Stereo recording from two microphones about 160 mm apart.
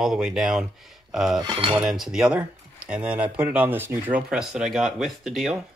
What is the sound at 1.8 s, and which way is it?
Speech, centre (ahead or behind).